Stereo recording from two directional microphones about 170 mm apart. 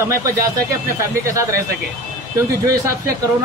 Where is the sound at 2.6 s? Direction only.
20° right (ahead or behind).